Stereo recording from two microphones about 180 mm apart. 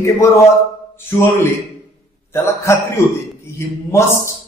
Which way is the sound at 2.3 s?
15° left (ahead or behind).